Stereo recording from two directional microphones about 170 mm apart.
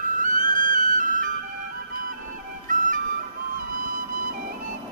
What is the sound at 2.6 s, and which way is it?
Music, 50° right (ahead or behind).